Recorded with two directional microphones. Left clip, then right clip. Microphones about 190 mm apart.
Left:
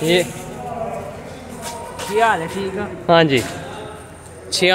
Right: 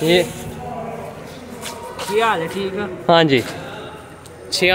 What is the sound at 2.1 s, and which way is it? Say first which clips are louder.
Speech: left 1 dB; 10° right (ahead or behind).